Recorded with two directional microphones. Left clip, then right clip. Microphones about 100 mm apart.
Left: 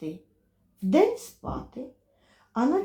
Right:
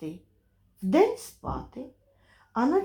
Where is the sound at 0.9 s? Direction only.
30° left (ahead or behind).